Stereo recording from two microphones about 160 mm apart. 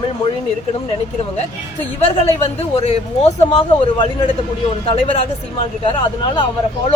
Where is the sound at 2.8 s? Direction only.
40° left (ahead or behind).